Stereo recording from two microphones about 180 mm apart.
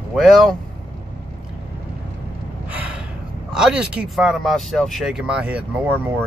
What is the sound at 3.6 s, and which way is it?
Speech, 5° right (ahead or behind).